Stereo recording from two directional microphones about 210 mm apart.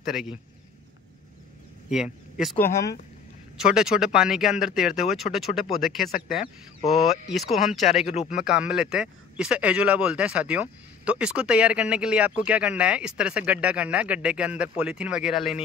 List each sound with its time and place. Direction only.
0.0 s speech: centre (ahead or behind)
1.9 s speech: 5° right (ahead or behind)
3.5 s speech: 5° right (ahead or behind)
7.9 s speech: 30° left (ahead or behind)
8.3 s speech: 5° right (ahead or behind)